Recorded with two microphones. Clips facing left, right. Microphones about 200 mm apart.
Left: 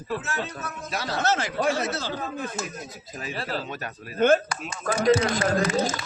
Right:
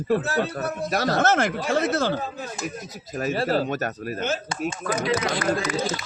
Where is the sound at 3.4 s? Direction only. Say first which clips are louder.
Right 9 dB; 55° right (ahead or behind).